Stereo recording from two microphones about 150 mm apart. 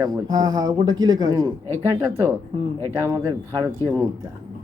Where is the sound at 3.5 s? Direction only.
15° right (ahead or behind).